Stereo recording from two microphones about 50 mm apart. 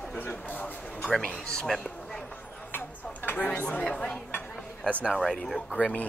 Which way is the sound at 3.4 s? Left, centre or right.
Left.